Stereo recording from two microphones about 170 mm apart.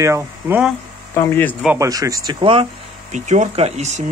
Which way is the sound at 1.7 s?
20° right (ahead or behind).